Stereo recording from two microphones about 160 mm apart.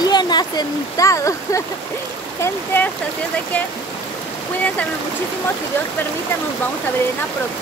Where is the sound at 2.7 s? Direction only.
10° left (ahead or behind).